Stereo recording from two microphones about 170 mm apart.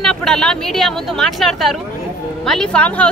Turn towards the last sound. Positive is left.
turn(degrees=5)  # may be behind; listen again after turning